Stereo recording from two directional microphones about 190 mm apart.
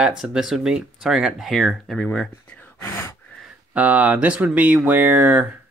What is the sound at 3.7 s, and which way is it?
Speech, 10° right (ahead or behind).